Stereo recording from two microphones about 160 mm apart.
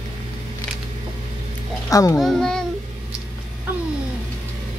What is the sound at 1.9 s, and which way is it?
Speech, 20° left (ahead or behind).